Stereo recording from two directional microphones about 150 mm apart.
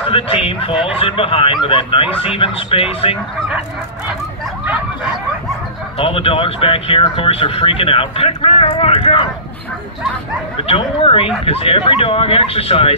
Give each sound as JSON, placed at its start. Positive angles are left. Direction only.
{"t": 0.1, "sound": "speech", "side_deg": 35}
{"t": 4.6, "sound": "a sound", "side_deg": -5}
{"t": 5.9, "sound": "speech", "side_deg": 40}
{"t": 10.6, "sound": "speech", "side_deg": 40}